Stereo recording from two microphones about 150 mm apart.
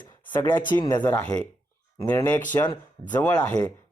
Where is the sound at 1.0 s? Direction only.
10° left (ahead or behind).